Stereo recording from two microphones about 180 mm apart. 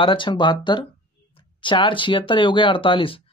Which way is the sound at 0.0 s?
25° left (ahead or behind).